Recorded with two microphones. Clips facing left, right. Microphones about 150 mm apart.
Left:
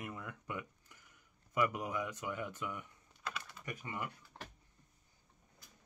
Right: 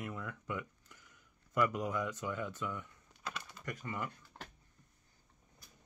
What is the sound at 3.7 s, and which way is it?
Speech, 20° left (ahead or behind).